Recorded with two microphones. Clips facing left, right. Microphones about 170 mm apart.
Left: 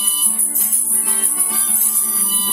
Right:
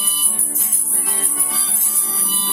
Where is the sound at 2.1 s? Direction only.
Centre (ahead or behind).